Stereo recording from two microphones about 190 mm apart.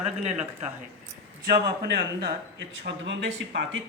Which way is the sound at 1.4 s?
55° right (ahead or behind).